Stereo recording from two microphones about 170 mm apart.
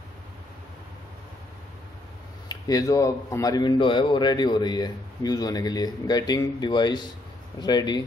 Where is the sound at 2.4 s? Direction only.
20° left (ahead or behind).